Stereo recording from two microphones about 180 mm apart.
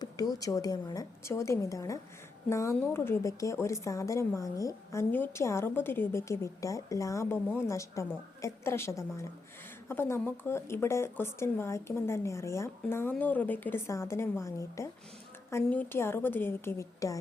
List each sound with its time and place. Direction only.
0.3 s a woman's voice: 20° left (ahead or behind)